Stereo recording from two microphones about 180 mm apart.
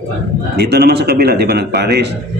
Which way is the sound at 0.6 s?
65° right (ahead or behind).